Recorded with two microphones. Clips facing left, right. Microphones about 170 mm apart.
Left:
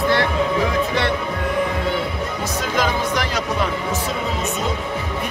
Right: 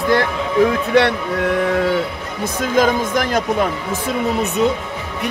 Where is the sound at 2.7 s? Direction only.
50° right (ahead or behind).